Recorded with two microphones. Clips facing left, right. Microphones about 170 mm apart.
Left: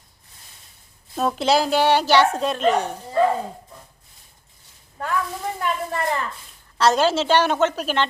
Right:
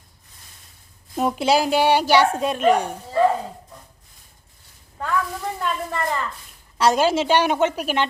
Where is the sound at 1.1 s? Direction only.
15° right (ahead or behind).